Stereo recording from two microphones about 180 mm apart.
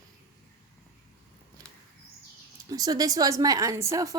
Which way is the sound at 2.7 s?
20° right (ahead or behind).